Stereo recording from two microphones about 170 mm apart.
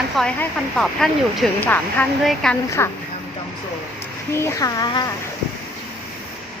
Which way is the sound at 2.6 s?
15° left (ahead or behind).